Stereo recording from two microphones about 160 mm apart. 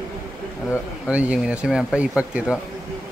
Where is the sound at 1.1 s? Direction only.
5° right (ahead or behind).